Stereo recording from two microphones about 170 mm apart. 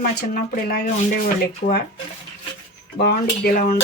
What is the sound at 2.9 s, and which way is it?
Speech, 65° left (ahead or behind).